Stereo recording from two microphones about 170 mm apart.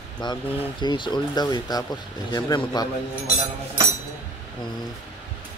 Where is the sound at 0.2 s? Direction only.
25° left (ahead or behind).